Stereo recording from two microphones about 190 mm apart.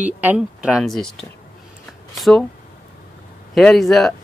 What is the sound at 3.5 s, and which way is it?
Speech, centre (ahead or behind).